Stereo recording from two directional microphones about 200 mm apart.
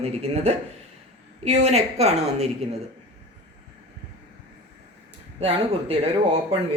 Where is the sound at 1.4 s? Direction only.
35° right (ahead or behind).